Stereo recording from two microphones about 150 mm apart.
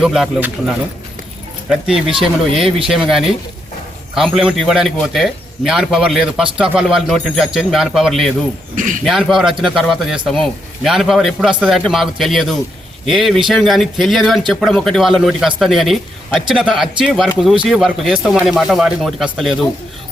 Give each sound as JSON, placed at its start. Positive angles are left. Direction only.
{"t": 0.0, "sound": "a man's voice", "side_deg": -5}
{"t": 1.7, "sound": "a man's voice", "side_deg": -5}
{"t": 8.7, "sound": "speech", "side_deg": -60}
{"t": 9.0, "sound": "a man's voice", "side_deg": 0}